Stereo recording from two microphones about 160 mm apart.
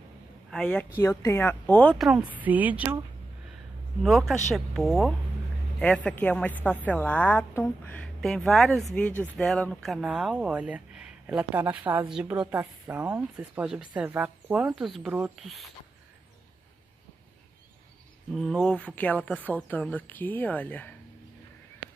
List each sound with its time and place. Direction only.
0.5 s speech: 5° left (ahead or behind)
1.0 s a woman's voice: 15° left (ahead or behind)
2.0 s speech: 5° right (ahead or behind)
4.0 s a woman's voice: centre (ahead or behind)
18.3 s a woman's voice: 5° left (ahead or behind)